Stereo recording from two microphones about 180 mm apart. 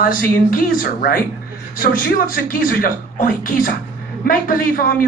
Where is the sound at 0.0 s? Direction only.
50° left (ahead or behind).